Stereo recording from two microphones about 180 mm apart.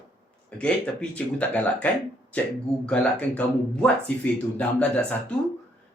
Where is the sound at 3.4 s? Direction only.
5° left (ahead or behind).